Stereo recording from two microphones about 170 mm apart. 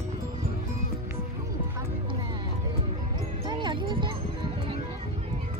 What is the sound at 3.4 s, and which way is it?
Music, 30° right (ahead or behind).